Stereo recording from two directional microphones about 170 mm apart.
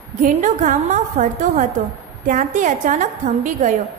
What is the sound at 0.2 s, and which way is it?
A woman's voice, 50° right (ahead or behind).